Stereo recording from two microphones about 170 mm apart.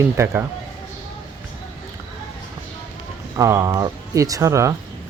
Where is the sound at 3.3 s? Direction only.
15° right (ahead or behind).